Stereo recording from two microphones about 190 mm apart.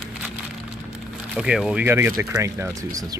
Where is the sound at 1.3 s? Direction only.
5° right (ahead or behind).